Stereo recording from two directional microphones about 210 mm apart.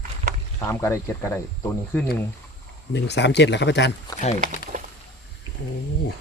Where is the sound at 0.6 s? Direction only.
15° left (ahead or behind).